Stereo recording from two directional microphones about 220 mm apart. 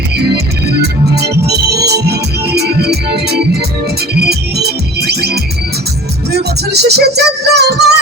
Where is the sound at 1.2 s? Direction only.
45° right (ahead or behind).